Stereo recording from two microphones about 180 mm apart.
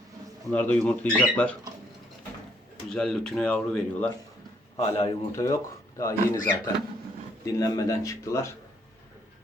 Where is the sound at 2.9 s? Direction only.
5° left (ahead or behind).